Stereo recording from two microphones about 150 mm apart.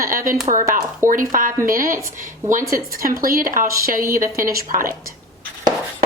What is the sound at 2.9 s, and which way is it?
Speech, 75° right (ahead or behind).